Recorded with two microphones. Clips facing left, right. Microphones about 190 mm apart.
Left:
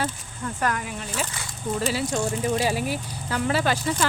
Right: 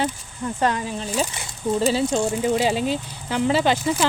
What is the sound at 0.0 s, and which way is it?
Speech, 20° right (ahead or behind).